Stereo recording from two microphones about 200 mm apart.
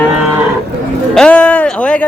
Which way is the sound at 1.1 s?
5° left (ahead or behind).